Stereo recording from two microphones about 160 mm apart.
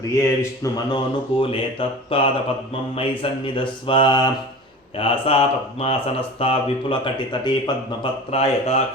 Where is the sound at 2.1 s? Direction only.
35° left (ahead or behind).